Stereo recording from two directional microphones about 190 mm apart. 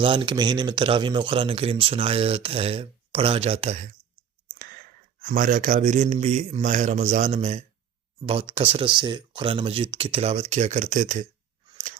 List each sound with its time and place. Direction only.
0.0 s speech: 25° right (ahead or behind)
5.2 s a man's voice: 45° right (ahead or behind)